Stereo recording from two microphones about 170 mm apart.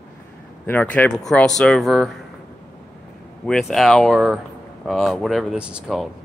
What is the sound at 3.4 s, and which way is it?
Speech, centre (ahead or behind).